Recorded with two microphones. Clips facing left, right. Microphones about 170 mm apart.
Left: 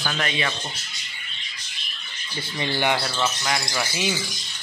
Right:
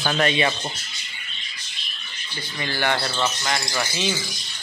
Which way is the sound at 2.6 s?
15° left (ahead or behind).